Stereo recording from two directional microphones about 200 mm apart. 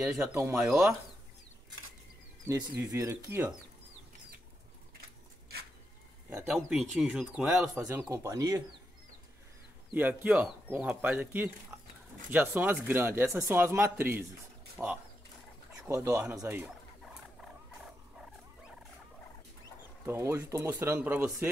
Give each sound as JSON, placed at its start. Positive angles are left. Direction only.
{"t": 0.0, "sound": "speech", "side_deg": -5}
{"t": 2.4, "sound": "speech", "side_deg": -15}
{"t": 6.5, "sound": "speech", "side_deg": 0}
{"t": 9.9, "sound": "speech", "side_deg": -10}
{"t": 15.9, "sound": "speech", "side_deg": -15}
{"t": 20.1, "sound": "speech", "side_deg": -15}